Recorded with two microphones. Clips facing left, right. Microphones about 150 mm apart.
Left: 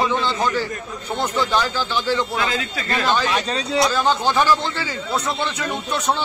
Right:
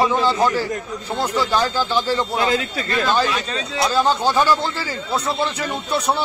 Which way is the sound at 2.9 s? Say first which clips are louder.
Right 1 dB; 40° left (ahead or behind).